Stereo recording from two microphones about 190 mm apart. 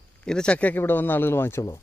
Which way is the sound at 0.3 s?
5° left (ahead or behind).